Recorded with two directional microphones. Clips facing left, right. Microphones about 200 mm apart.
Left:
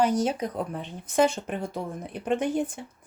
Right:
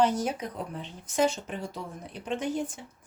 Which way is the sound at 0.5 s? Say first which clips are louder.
Left 5 dB; 55° left (ahead or behind).